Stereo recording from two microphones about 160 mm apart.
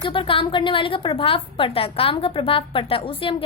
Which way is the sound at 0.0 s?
30° left (ahead or behind).